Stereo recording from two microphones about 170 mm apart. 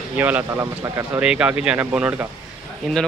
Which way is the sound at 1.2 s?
5° right (ahead or behind).